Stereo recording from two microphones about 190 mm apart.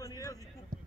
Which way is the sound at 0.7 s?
45° right (ahead or behind).